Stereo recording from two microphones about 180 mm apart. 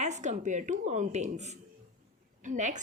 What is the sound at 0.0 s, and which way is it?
A woman's voice, 40° right (ahead or behind).